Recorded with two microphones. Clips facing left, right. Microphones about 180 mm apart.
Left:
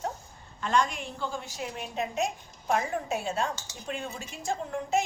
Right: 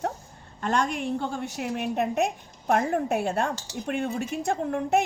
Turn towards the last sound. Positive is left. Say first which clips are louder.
# right 5 dB
turn(degrees=-60)  # may be behind; listen again after turning